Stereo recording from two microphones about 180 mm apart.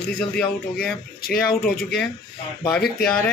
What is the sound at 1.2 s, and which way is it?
Speech, 55° left (ahead or behind).